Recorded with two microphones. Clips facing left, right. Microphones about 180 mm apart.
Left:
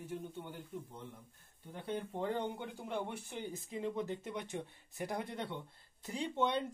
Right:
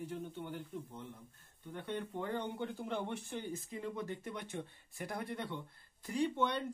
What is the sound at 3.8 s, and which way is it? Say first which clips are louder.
Speech: left 5 dB; 20° left (ahead or behind).